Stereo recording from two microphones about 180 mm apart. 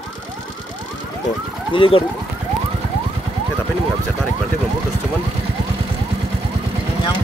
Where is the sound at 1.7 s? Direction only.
30° left (ahead or behind).